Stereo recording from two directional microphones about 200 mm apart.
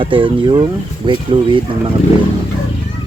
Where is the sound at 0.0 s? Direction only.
25° right (ahead or behind).